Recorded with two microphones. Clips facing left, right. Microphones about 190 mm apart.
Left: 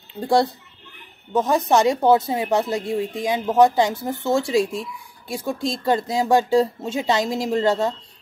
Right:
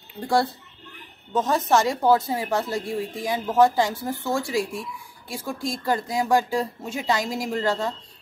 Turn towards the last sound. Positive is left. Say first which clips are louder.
# left 5 dB
turn(degrees=25)  # may be behind; listen again after turning